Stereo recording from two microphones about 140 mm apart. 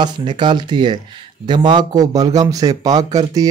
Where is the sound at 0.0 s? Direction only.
35° right (ahead or behind).